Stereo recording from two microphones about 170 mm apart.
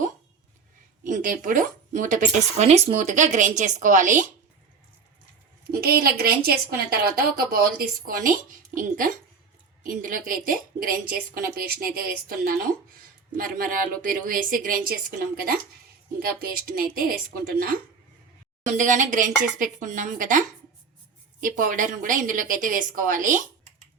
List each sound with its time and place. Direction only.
1.0 s speech: 50° right (ahead or behind)
5.6 s a woman's voice: 60° right (ahead or behind)
16.2 s a woman's voice: 60° right (ahead or behind)
18.8 s speech: 50° right (ahead or behind)